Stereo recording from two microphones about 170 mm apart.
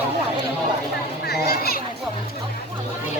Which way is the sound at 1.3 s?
65° left (ahead or behind).